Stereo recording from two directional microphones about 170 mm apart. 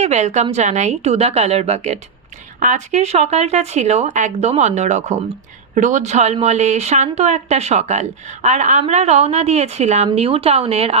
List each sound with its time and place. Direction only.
0.0 s speech: 40° right (ahead or behind)